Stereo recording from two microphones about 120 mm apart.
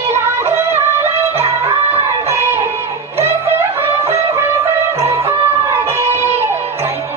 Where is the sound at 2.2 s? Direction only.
20° right (ahead or behind).